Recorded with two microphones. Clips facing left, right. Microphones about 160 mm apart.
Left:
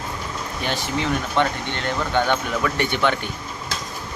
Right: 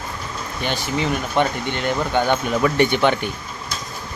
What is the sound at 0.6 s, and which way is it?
Speech, centre (ahead or behind).